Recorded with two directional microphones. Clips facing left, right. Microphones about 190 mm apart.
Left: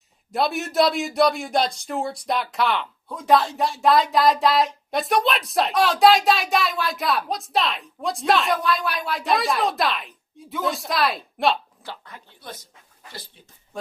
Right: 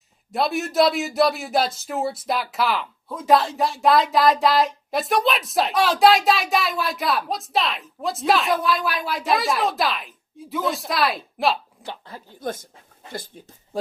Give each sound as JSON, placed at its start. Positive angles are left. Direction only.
{"t": 0.3, "sound": "a man's voice", "side_deg": 0}
{"t": 12.0, "sound": "speech", "side_deg": -30}
{"t": 12.4, "sound": "speech", "side_deg": -50}